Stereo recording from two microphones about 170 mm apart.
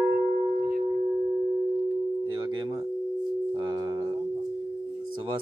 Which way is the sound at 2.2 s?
25° right (ahead or behind).